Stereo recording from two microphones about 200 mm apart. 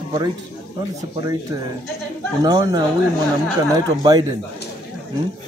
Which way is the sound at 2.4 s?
20° right (ahead or behind).